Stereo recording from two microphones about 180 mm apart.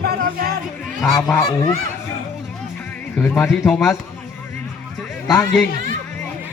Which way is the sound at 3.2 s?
10° left (ahead or behind).